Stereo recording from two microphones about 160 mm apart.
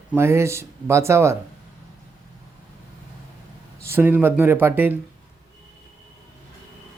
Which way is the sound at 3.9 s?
10° right (ahead or behind).